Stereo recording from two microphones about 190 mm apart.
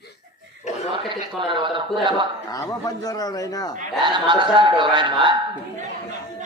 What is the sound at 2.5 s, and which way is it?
A man's voice, 20° left (ahead or behind).